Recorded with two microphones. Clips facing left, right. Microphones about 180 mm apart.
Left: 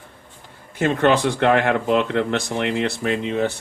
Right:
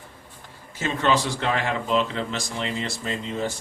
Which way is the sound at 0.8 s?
55° left (ahead or behind).